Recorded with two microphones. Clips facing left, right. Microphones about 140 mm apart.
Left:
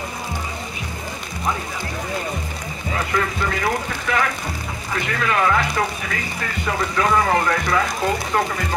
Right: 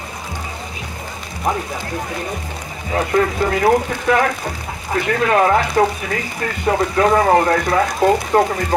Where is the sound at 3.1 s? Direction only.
40° right (ahead or behind).